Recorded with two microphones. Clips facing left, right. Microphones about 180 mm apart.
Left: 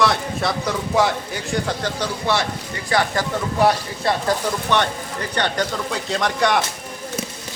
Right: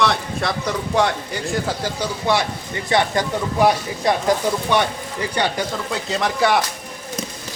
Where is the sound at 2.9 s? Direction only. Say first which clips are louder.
Right 2 dB; 20° right (ahead or behind); by 6.6 s 5° right (ahead or behind).